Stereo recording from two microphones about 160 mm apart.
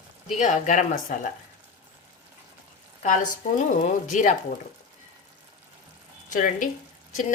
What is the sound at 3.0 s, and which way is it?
A woman's voice, 55° left (ahead or behind).